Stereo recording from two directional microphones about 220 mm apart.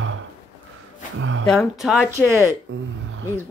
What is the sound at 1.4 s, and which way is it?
Speech, centre (ahead or behind).